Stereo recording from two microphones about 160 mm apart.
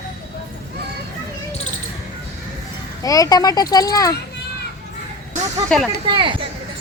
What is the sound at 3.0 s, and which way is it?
Speech, 20° left (ahead or behind).